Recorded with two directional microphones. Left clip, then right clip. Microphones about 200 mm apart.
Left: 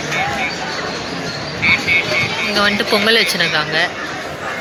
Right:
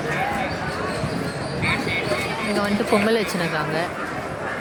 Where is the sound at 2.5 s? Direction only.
10° left (ahead or behind).